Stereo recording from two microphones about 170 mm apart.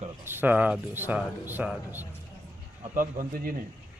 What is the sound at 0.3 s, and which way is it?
Speech, 10° right (ahead or behind).